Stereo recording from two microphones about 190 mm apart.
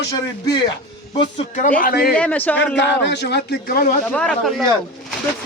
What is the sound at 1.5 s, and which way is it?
Speech, 45° left (ahead or behind).